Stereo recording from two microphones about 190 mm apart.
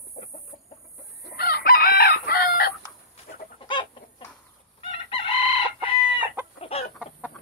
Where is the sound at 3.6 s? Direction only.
25° left (ahead or behind).